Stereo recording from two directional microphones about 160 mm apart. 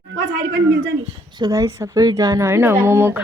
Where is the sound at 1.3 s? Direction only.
25° right (ahead or behind).